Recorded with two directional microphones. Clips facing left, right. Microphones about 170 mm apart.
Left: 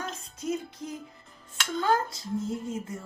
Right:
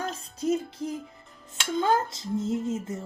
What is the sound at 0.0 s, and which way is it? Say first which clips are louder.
Music: right 5 dB; 30° right (ahead or behind).